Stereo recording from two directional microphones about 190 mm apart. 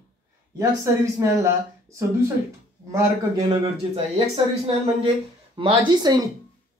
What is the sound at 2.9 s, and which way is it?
Speech, 15° right (ahead or behind).